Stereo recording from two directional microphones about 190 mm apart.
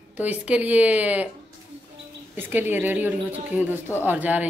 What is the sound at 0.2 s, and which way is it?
Speech, 10° right (ahead or behind).